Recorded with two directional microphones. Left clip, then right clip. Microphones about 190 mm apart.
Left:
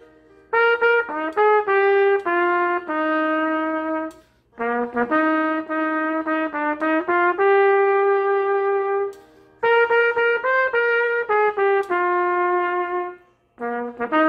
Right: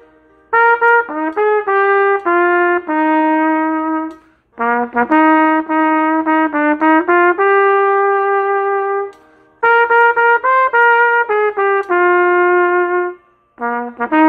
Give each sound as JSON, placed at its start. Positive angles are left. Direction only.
{"t": 0.5, "sound": "trumpet", "side_deg": -40}
{"t": 4.6, "sound": "brass instrument", "side_deg": -40}
{"t": 9.6, "sound": "trumpet", "side_deg": -45}
{"t": 13.6, "sound": "brass instrument", "side_deg": -40}